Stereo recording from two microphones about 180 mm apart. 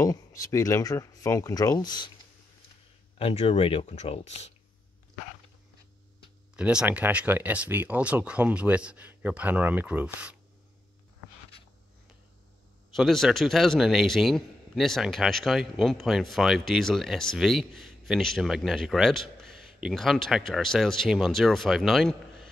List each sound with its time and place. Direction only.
0.0 s speech: 20° left (ahead or behind)
3.2 s speech: 30° left (ahead or behind)
6.5 s speech: 5° right (ahead or behind)
12.9 s a man's voice: centre (ahead or behind)